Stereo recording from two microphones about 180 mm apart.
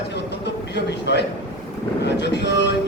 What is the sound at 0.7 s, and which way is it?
A man's voice, 75° left (ahead or behind).